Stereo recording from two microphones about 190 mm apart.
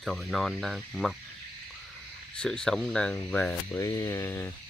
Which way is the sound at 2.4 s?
5° left (ahead or behind).